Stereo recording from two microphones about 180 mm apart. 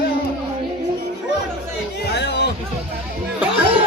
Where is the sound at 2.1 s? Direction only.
70° left (ahead or behind).